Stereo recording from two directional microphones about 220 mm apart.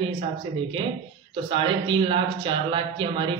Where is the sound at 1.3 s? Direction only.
25° right (ahead or behind).